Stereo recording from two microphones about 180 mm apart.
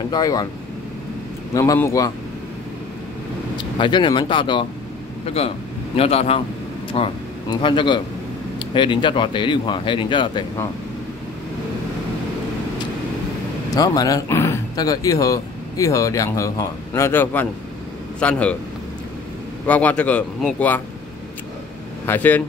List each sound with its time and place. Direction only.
0.1 s speech: 20° left (ahead or behind)
1.5 s speech: 15° left (ahead or behind)
3.5 s speech: 25° left (ahead or behind)
5.9 s a man's voice: 35° left (ahead or behind)
13.7 s speech: 20° left (ahead or behind)
19.6 s speech: 10° left (ahead or behind)
22.0 s speech: 10° left (ahead or behind)